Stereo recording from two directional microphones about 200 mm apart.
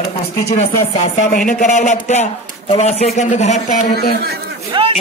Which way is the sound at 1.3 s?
40° left (ahead or behind).